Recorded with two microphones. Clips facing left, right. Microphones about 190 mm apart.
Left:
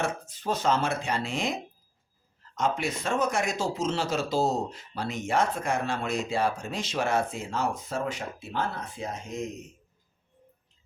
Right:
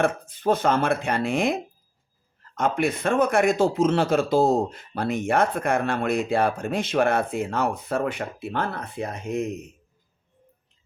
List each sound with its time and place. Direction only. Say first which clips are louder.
0.0 s a man's voice: right 8 dB; 55° right (ahead or behind)